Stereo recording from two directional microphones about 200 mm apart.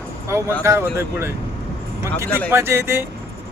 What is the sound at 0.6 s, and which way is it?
Speech, 15° right (ahead or behind).